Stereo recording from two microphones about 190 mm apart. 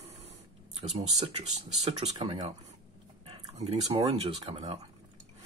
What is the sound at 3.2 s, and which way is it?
Speech, 35° right (ahead or behind).